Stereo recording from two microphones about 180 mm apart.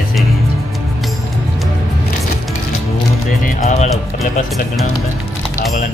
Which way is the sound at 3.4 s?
40° left (ahead or behind).